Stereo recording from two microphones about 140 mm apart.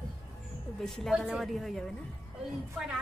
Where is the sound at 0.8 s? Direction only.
Centre (ahead or behind).